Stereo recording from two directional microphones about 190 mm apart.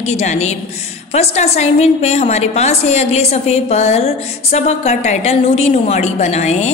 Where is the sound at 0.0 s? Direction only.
35° left (ahead or behind).